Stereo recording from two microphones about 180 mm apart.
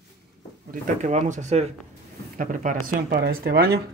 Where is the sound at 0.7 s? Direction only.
40° right (ahead or behind).